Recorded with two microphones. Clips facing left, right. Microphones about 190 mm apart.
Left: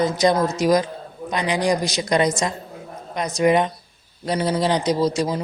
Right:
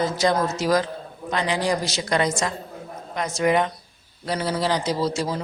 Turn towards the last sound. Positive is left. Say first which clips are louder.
# left 4 dB
turn(degrees=15)  # may be behind; listen again after turning